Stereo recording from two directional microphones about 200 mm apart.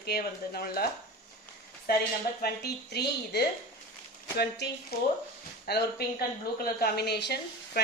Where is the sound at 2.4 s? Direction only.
55° left (ahead or behind).